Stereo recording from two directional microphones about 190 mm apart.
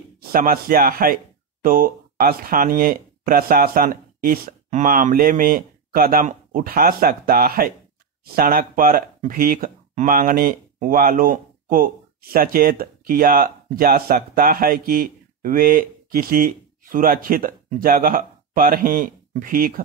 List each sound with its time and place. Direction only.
0.3 s speech: 50° right (ahead or behind)